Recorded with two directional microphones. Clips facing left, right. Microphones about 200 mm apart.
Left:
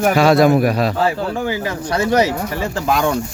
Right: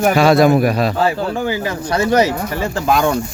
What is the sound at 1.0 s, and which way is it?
Speech, 30° right (ahead or behind).